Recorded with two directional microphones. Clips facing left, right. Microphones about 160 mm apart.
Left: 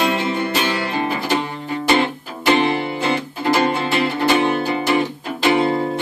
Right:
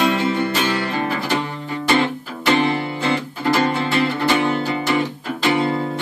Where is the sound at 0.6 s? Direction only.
15° left (ahead or behind).